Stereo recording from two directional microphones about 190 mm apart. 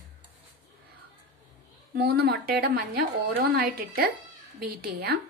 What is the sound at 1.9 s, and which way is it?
A woman's voice, 55° right (ahead or behind).